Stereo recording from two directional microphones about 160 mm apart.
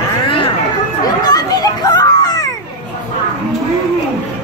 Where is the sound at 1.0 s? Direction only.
25° left (ahead or behind).